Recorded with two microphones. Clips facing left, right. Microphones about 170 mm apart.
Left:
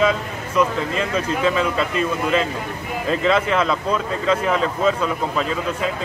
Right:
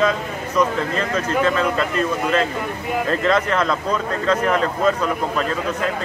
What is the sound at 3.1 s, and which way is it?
Speech, 5° left (ahead or behind).